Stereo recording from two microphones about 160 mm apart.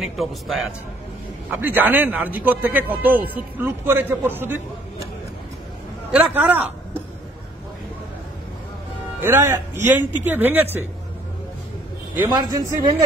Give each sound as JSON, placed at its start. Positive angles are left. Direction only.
{"t": 0.0, "sound": "a man's voice", "side_deg": 0}
{"t": 1.6, "sound": "speech", "side_deg": -10}
{"t": 6.1, "sound": "speech", "side_deg": -5}
{"t": 9.2, "sound": "speech", "side_deg": -15}
{"t": 12.2, "sound": "a man's voice", "side_deg": -25}